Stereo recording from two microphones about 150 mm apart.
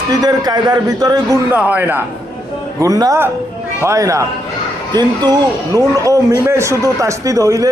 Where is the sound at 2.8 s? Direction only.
25° right (ahead or behind).